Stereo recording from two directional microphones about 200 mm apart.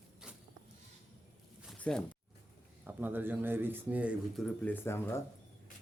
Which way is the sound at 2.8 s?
10° right (ahead or behind).